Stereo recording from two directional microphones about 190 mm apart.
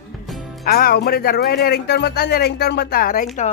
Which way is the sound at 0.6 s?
55° left (ahead or behind).